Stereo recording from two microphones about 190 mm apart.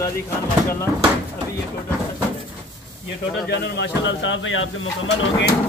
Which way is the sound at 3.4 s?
60° left (ahead or behind).